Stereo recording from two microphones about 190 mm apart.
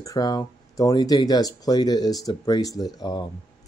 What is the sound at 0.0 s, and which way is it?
Speech, 20° left (ahead or behind).